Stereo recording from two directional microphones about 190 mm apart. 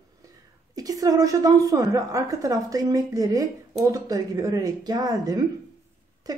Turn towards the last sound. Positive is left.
turn(degrees=-20)  # may be behind; listen again after turning